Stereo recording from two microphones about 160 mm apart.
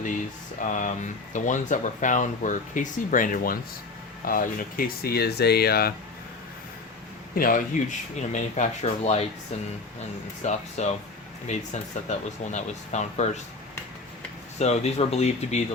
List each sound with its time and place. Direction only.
0.6 s speech: 50° left (ahead or behind); by 5.9 s 75° left (ahead or behind)
7.3 s speech: 60° left (ahead or behind); by 9.2 s 45° left (ahead or behind)
10.4 s speech: 45° left (ahead or behind)
14.6 s speech: 40° left (ahead or behind)